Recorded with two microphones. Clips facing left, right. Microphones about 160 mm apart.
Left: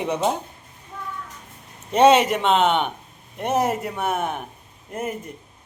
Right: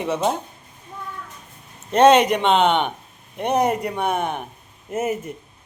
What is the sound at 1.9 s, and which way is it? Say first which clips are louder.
A man's voice: right 1 dB; 10° left (ahead or behind).